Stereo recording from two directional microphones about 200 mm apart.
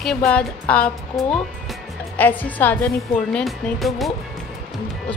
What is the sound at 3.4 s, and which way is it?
Speech, centre (ahead or behind).